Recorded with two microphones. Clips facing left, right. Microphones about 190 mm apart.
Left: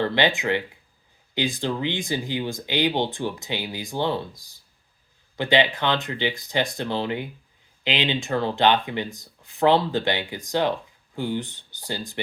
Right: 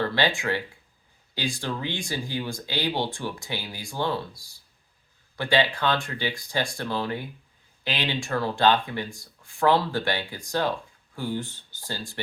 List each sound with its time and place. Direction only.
0.0 s speech: 20° left (ahead or behind)